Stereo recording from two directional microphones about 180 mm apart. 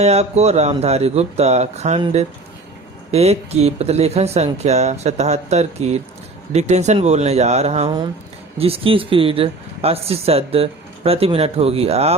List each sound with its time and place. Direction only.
0.0 s speech: 35° right (ahead or behind)
3.1 s speech: 35° right (ahead or behind)